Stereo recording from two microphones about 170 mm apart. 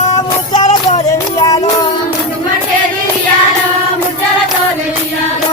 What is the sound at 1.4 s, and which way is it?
Music, 20° left (ahead or behind).